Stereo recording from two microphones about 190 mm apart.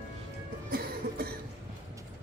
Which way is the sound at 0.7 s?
55° right (ahead or behind).